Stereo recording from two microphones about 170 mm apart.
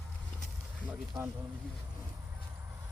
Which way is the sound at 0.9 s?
10° right (ahead or behind).